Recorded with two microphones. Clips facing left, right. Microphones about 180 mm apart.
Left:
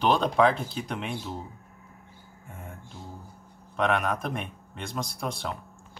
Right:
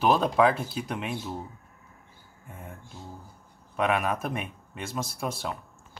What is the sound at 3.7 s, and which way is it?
Speech, 5° right (ahead or behind).